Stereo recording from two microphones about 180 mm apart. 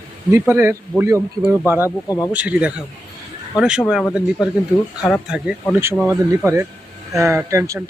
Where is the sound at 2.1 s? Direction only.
20° left (ahead or behind).